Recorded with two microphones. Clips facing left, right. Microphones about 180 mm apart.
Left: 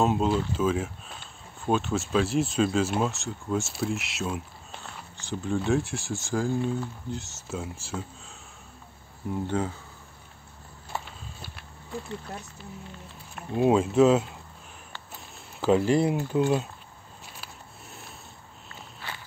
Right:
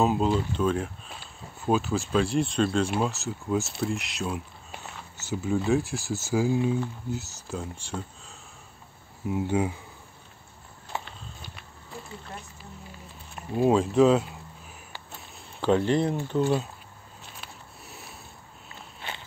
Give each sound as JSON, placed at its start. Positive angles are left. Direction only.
{"t": 0.0, "sound": "speech", "side_deg": 0}
{"t": 9.3, "sound": "speech", "side_deg": -10}
{"t": 13.5, "sound": "speech", "side_deg": 0}
{"t": 15.6, "sound": "speech", "side_deg": 5}
{"t": 17.4, "sound": "a sound", "side_deg": 0}
{"t": 18.9, "sound": "walk", "side_deg": -20}